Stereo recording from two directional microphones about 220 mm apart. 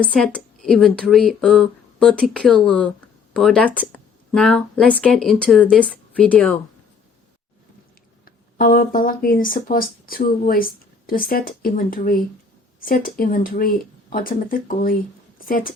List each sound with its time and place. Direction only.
0.0 s a woman's voice: 5° left (ahead or behind)
8.2 s a woman's voice: 40° left (ahead or behind)